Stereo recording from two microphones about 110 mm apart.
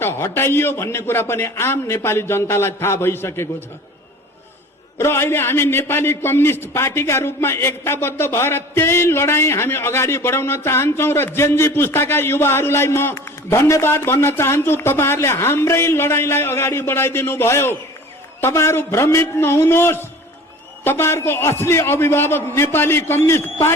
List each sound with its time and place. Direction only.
0.0 s a man's voice: 20° left (ahead or behind)
4.9 s a man's voice: 25° left (ahead or behind)